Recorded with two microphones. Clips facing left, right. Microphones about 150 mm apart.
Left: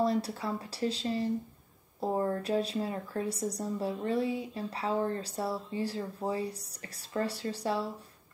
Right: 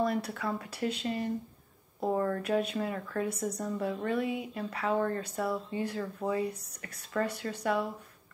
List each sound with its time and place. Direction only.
0.0 s speech: 30° left (ahead or behind)